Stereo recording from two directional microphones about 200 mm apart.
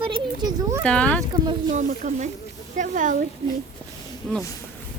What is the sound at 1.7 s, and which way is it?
Speech, 35° right (ahead or behind).